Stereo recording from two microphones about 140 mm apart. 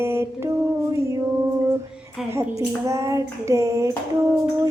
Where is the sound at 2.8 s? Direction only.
20° right (ahead or behind).